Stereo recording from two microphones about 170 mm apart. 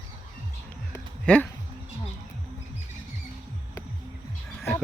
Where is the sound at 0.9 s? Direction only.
10° left (ahead or behind).